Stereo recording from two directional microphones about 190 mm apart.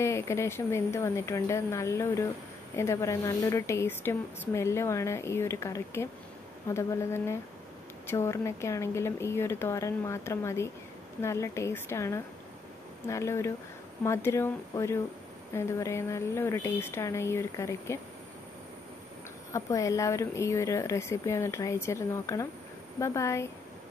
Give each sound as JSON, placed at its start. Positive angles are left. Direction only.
{"t": 0.0, "sound": "a woman's voice", "side_deg": 15}
{"t": 19.5, "sound": "a woman's voice", "side_deg": 15}